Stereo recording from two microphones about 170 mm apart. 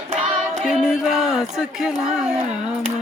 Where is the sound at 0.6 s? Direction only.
Centre (ahead or behind).